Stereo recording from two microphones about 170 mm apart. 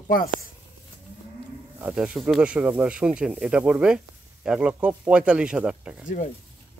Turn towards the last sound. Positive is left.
turn(degrees=-5)  # may be behind; listen again after turning